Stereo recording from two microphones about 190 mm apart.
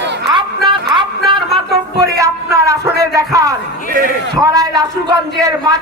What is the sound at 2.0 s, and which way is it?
A man's voice, 15° right (ahead or behind).